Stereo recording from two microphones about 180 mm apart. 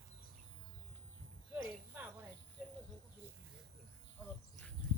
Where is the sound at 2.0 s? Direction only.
10° right (ahead or behind).